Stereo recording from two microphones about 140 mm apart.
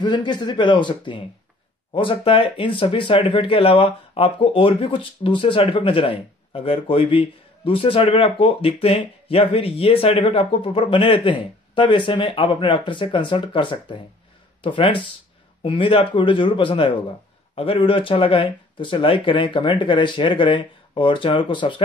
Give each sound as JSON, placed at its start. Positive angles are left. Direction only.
{"t": 0.0, "sound": "speech", "side_deg": 30}